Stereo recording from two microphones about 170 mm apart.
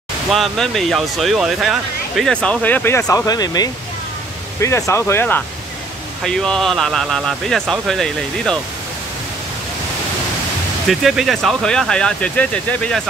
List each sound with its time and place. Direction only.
0.3 s speech: centre (ahead or behind)
10.9 s speech: centre (ahead or behind)